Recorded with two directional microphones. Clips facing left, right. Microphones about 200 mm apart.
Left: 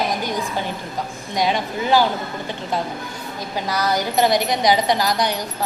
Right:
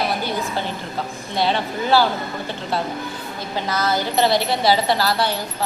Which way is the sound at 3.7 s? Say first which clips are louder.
Left 1 dB; 15° left (ahead or behind).